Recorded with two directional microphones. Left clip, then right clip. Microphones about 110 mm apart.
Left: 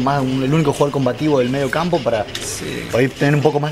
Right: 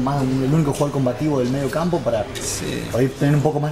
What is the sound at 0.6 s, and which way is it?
Speech, 40° left (ahead or behind).